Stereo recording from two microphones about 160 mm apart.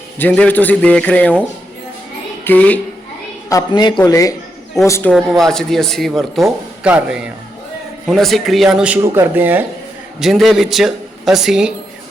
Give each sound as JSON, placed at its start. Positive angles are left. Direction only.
{"t": 0.2, "sound": "a man's voice", "side_deg": 10}
{"t": 3.5, "sound": "a man's voice", "side_deg": 25}
{"t": 5.1, "sound": "a man's voice", "side_deg": 0}
{"t": 10.2, "sound": "a man's voice", "side_deg": 0}